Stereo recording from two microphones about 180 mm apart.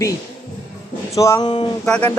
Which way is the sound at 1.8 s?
5° left (ahead or behind).